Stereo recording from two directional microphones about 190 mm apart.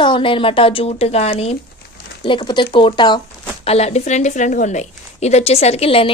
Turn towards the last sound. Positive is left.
turn(degrees=30)  # may be behind; listen again after turning